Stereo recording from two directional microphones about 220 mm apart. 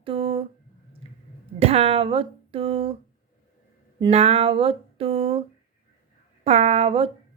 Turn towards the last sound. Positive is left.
turn(degrees=-25)  # may be behind; listen again after turning